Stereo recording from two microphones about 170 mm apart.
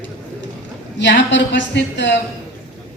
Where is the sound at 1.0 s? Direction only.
90° left.